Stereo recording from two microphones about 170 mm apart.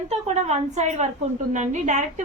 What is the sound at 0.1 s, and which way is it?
A woman's voice, 40° right (ahead or behind).